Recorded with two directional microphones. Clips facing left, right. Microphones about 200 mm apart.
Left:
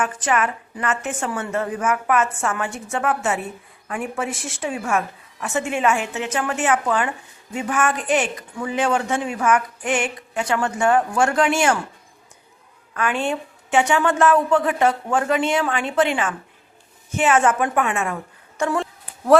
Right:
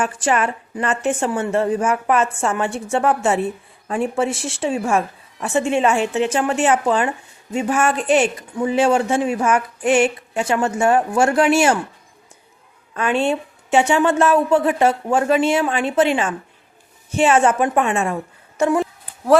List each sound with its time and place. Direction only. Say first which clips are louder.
0.0 s a woman's voice: right 2 dB; 30° right (ahead or behind)
12.9 s a woman's voice: right 4 dB; 25° right (ahead or behind)